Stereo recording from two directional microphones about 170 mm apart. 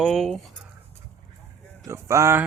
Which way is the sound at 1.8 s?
15° right (ahead or behind).